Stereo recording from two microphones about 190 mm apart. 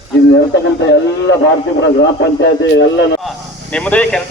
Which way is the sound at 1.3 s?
75° left (ahead or behind).